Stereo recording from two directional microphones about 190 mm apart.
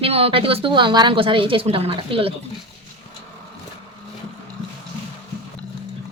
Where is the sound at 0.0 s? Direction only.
30° right (ahead or behind).